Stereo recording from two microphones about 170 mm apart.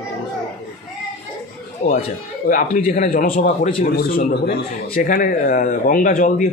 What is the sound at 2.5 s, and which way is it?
A man's voice, 50° left (ahead or behind).